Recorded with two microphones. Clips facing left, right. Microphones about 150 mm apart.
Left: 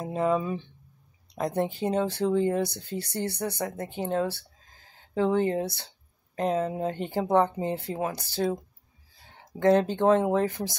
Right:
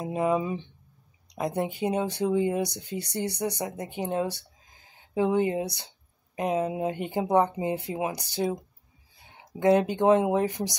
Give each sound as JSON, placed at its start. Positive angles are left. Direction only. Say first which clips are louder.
{"t": 0.0, "sound": "speech", "louder": "even", "side_deg": -15}
{"t": 9.6, "sound": "speech", "louder": "even", "side_deg": -10}